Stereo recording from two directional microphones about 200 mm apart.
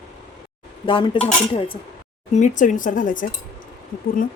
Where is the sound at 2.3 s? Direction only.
35° left (ahead or behind).